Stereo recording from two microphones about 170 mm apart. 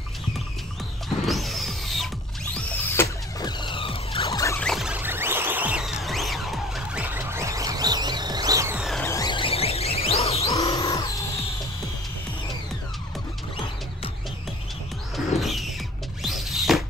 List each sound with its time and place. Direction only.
1.0 s a sound: centre (ahead or behind)
2.5 s music: 15° left (ahead or behind); by 4.3 s 35° left (ahead or behind)
4.3 s rodents: 20° left (ahead or behind)
4.6 s music: centre (ahead or behind); by 8.7 s 20° right (ahead or behind)
8.7 s music: centre (ahead or behind)
9.0 s music: 20° left (ahead or behind); by 10.6 s 35° left (ahead or behind)
10.6 s a sound: 20° left (ahead or behind)
15.1 s music: centre (ahead or behind)